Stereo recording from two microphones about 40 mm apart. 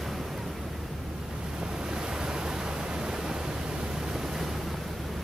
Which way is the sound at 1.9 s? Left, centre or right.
Centre.